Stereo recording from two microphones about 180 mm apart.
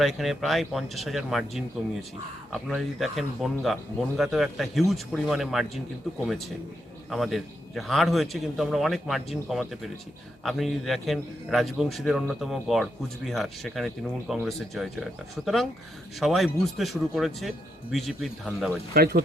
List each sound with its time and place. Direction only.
0.0 s a man's voice: centre (ahead or behind)
16.2 s a man's voice: centre (ahead or behind)
18.9 s speech: 55° right (ahead or behind)